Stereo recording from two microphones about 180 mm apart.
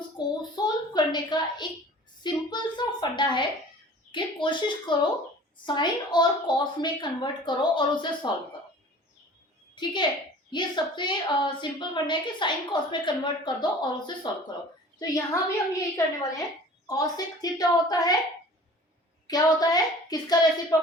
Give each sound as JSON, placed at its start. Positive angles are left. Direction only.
{"t": 0.2, "sound": "a sound", "side_deg": 25}
{"t": 2.2, "sound": "a woman's voice", "side_deg": 25}
{"t": 9.7, "sound": "a woman's voice", "side_deg": 25}
{"t": 19.3, "sound": "a woman's voice", "side_deg": 20}